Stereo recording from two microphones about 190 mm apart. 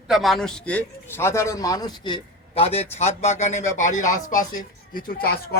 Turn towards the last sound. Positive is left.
turn(degrees=55)  # may be behind; listen again after turning